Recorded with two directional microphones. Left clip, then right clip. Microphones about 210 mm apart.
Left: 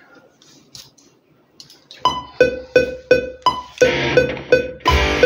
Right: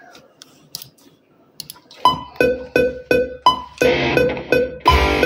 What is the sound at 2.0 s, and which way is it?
Music, 5° left (ahead or behind).